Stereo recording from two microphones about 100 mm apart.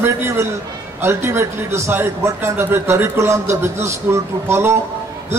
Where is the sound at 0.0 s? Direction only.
25° right (ahead or behind).